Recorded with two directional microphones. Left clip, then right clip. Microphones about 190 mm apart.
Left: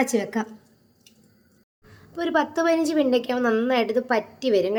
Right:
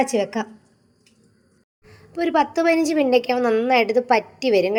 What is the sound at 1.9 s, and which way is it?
A woman's voice, 15° right (ahead or behind).